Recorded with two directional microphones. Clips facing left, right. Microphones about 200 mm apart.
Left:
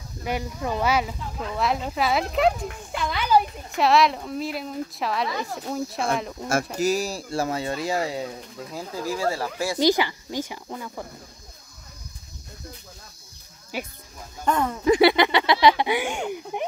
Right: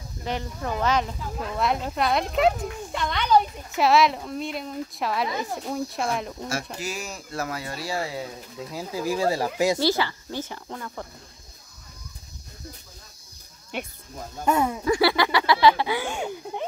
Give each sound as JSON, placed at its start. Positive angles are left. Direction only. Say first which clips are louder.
{"t": 0.2, "sound": "speech", "louder": "left 2 dB", "side_deg": 10}
{"t": 6.8, "sound": "speech", "louder": "left 10 dB", "side_deg": 35}
{"t": 8.7, "sound": "speech", "louder": "right 2 dB", "side_deg": -15}
{"t": 9.8, "sound": "speech", "louder": "left 3 dB", "side_deg": 15}
{"t": 13.7, "sound": "speech", "louder": "left 1 dB", "side_deg": 5}
{"t": 14.4, "sound": "speech", "louder": "right 1 dB", "side_deg": -10}
{"t": 14.9, "sound": "speech", "louder": "left 6 dB", "side_deg": 20}